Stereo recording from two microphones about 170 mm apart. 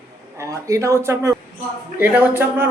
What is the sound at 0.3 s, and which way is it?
Speech, 20° right (ahead or behind).